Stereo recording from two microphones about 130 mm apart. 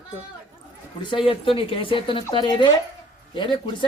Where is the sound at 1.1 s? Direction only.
45° left (ahead or behind).